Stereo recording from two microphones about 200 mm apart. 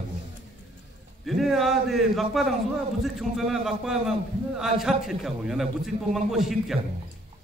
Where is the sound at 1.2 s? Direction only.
Centre (ahead or behind).